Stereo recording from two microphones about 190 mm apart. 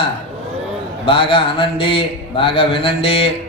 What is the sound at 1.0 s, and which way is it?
Speech, 30° left (ahead or behind).